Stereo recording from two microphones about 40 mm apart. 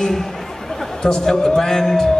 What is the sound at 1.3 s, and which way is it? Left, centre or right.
Speech, centre.